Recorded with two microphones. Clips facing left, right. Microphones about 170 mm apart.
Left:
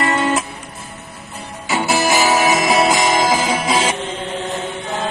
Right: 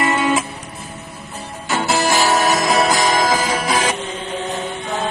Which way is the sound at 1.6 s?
Centre (ahead or behind).